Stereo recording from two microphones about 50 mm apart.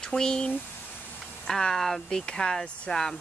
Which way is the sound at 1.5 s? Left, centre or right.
Centre.